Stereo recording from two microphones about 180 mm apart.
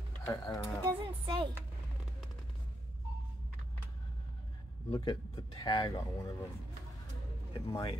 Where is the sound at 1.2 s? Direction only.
25° right (ahead or behind).